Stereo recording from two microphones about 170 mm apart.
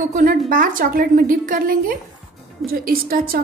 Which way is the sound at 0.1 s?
55° right (ahead or behind).